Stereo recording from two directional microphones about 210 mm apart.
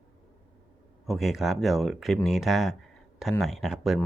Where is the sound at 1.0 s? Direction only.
Centre (ahead or behind).